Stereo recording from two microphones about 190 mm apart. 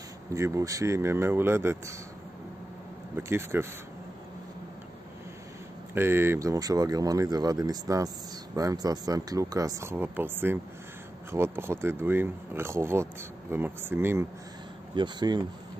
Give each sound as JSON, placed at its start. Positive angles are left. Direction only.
{"t": 0.3, "sound": "speech", "side_deg": -15}
{"t": 3.2, "sound": "speech", "side_deg": -15}
{"t": 5.9, "sound": "speech", "side_deg": -10}